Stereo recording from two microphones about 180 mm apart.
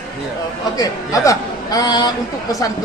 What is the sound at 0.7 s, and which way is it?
A man's voice, 20° left (ahead or behind).